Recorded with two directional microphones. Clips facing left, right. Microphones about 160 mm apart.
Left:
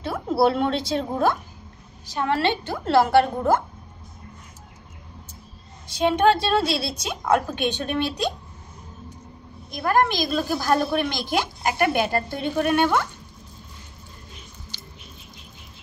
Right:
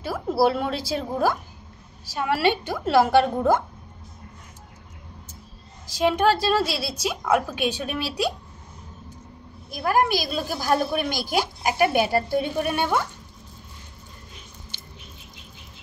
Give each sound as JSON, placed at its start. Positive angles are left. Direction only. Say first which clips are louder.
{"t": 0.0, "sound": "a woman's voice", "louder": "left 1 dB", "side_deg": -5}
{"t": 5.9, "sound": "a woman's voice", "louder": "left 1 dB", "side_deg": 0}
{"t": 9.7, "sound": "a woman's voice", "louder": "left 1 dB", "side_deg": -5}